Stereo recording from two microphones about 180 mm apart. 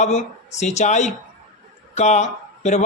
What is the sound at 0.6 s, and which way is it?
A man's voice, 40° left (ahead or behind).